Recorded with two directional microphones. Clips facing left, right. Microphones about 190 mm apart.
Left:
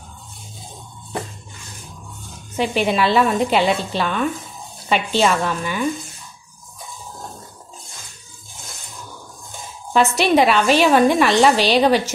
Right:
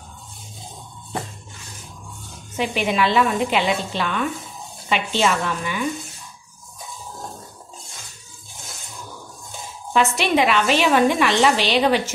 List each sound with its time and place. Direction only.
2.5 s a woman's voice: 35° left (ahead or behind)
9.9 s a woman's voice: 40° left (ahead or behind)